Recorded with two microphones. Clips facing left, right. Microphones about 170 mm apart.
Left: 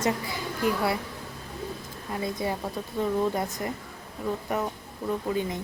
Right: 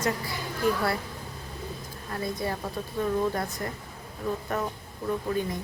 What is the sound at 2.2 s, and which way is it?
Speech, 15° left (ahead or behind).